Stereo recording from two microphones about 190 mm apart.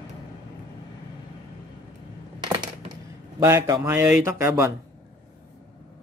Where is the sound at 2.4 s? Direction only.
20° right (ahead or behind).